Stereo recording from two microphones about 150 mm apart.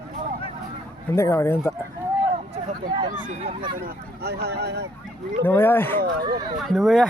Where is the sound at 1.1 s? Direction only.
15° left (ahead or behind).